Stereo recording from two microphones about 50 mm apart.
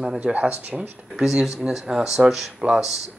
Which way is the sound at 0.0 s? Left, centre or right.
Right.